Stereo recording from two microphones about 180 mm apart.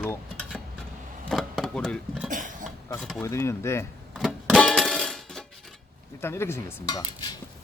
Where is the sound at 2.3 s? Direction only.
45° right (ahead or behind).